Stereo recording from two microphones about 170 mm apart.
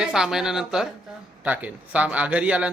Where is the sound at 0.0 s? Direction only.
5° right (ahead or behind).